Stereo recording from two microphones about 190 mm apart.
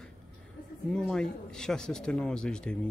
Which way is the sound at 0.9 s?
5° left (ahead or behind).